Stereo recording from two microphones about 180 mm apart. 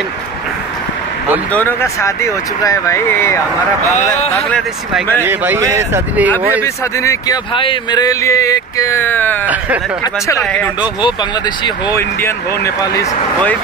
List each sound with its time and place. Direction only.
1.5 s speech: 10° left (ahead or behind)
4.4 s speech: 5° left (ahead or behind)
5.2 s speech: 10° right (ahead or behind)
6.6 s speech: 15° left (ahead or behind)
11.6 s speech: 15° left (ahead or behind)